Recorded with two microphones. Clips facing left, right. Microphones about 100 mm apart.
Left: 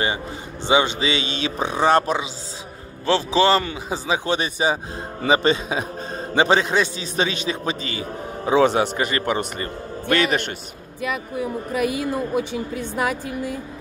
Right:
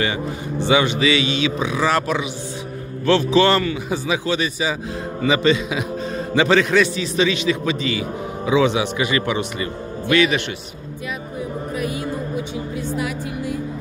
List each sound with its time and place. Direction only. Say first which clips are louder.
0.7 s a man's voice: right 2 dB; 25° left (ahead or behind); by 10.4 s 45° left (ahead or behind)